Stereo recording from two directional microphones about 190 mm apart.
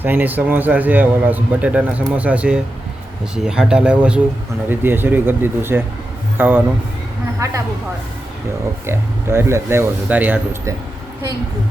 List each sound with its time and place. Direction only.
0.0 s a man's voice: 10° right (ahead or behind)
8.9 s a man's voice: 15° right (ahead or behind)